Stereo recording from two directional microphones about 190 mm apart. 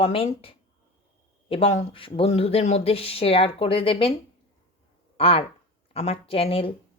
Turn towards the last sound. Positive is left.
turn(degrees=30)  # may be behind; listen again after turning